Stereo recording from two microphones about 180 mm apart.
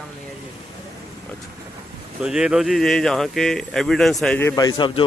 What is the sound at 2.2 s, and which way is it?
A man's voice, 5° right (ahead or behind).